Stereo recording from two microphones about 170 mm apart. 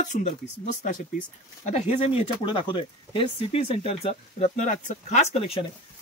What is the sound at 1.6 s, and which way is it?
Speech, 40° left (ahead or behind).